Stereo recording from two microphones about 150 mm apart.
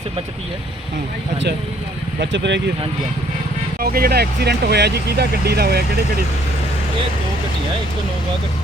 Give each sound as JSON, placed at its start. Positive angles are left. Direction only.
{"t": 3.8, "sound": "speech", "side_deg": -80}